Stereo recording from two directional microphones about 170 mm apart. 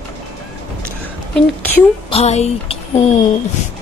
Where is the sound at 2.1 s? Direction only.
40° left (ahead or behind).